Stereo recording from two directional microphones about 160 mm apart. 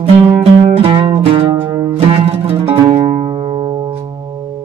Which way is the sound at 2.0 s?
40° right (ahead or behind).